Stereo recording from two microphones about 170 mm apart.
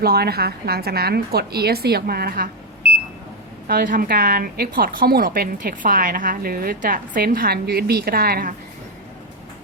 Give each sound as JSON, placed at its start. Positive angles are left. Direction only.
{"t": 0.0, "sound": "a woman's voice", "side_deg": -65}
{"t": 3.7, "sound": "a woman's voice", "side_deg": -60}